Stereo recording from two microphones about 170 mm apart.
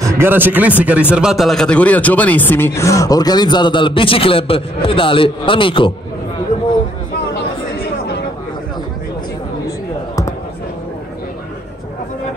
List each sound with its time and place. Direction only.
0.0 s speech: 15° right (ahead or behind); by 5.9 s 30° left (ahead or behind)